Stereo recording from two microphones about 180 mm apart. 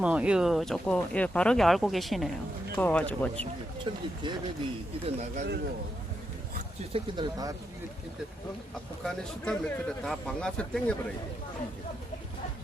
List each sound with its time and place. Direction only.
0.0 s speech: 5° right (ahead or behind)
3.4 s speech: 25° right (ahead or behind)
5.0 s speech: 40° right (ahead or behind)
6.9 s speech: 25° right (ahead or behind)
9.0 s speech: 5° left (ahead or behind)